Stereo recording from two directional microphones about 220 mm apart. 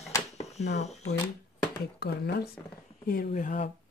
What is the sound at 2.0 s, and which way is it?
Speech, 45° left (ahead or behind).